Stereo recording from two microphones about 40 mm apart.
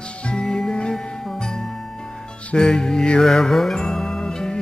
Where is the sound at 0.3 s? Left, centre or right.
Centre.